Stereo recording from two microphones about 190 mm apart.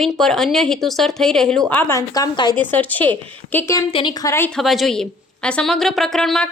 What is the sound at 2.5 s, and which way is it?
A woman's voice, 10° left (ahead or behind).